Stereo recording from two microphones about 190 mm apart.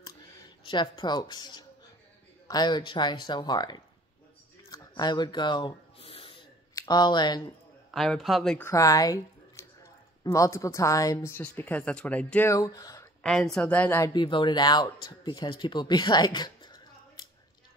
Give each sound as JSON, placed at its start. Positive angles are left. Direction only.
{"t": 0.7, "sound": "speech", "side_deg": 25}
{"t": 4.6, "sound": "a sound", "side_deg": 20}
{"t": 6.7, "sound": "speech", "side_deg": 20}
{"t": 7.9, "sound": "a man's voice", "side_deg": 0}
{"t": 8.6, "sound": "a woman's voice", "side_deg": 15}
{"t": 13.2, "sound": "speech", "side_deg": 5}